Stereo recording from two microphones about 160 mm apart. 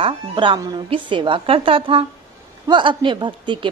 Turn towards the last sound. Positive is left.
turn(degrees=-30)  # may be behind; listen again after turning